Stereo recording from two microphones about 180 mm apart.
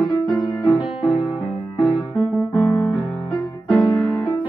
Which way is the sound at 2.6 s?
Centre (ahead or behind).